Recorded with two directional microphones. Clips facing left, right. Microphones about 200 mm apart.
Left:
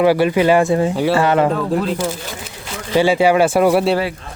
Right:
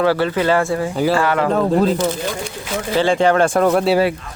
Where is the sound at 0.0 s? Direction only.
15° left (ahead or behind).